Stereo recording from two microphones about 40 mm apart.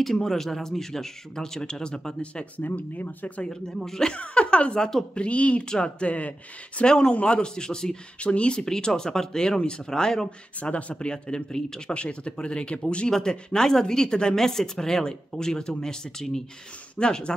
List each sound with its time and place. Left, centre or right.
0.0 s speech: centre
2.5 s speech: left
3.4 s speech: centre
4.1 s speech: left
4.7 s speech: centre
5.1 s speech: left
6.8 s speech: left
8.2 s speech: left
8.5 s speech: centre
10.6 s speech: left
11.0 s speech: left